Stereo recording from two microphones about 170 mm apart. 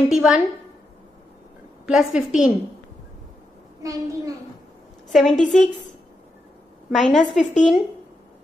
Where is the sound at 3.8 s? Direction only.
20° right (ahead or behind).